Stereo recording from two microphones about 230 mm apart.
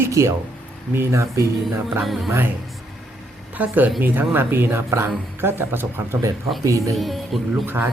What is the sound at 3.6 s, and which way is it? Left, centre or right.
Speech, centre.